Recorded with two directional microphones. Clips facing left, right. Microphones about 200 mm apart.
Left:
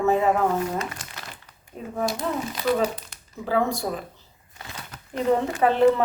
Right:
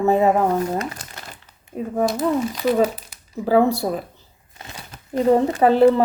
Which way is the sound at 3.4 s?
35° right (ahead or behind).